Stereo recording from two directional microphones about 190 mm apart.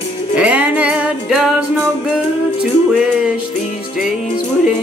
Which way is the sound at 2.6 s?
5° right (ahead or behind).